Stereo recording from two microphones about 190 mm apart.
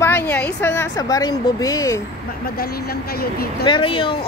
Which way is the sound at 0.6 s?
15° left (ahead or behind).